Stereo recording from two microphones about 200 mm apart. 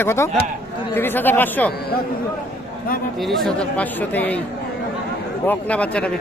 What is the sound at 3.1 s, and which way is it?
Speech, centre (ahead or behind).